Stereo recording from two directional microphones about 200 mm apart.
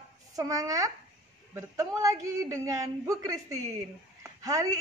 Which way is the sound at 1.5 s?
15° right (ahead or behind).